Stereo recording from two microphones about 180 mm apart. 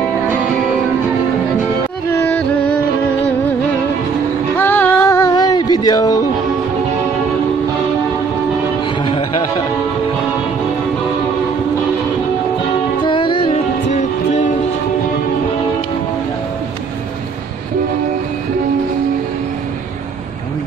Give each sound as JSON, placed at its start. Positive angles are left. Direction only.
{"t": 2.0, "sound": "music", "side_deg": 10}
{"t": 4.6, "sound": "female singing", "side_deg": 10}
{"t": 9.0, "sound": "music", "side_deg": 30}
{"t": 13.0, "sound": "music", "side_deg": 25}